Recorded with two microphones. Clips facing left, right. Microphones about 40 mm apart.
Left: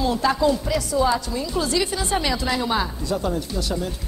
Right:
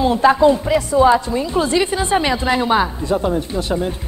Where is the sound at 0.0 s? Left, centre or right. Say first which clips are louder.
Right 7 dB; right.